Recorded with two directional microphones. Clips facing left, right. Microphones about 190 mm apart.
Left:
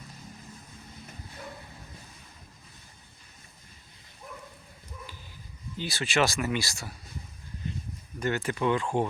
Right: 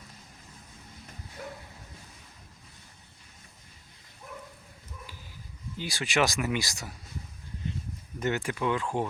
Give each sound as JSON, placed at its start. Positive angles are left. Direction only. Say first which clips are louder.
{"t": 5.7, "sound": "speech", "louder": "left 1 dB", "side_deg": -15}
{"t": 8.2, "sound": "speech", "louder": "left 1 dB", "side_deg": -15}